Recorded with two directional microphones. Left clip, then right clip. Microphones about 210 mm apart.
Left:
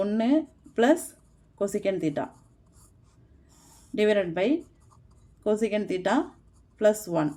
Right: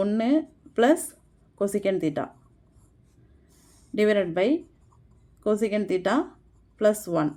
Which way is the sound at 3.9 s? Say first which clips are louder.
Right 1 dB; 15° right (ahead or behind).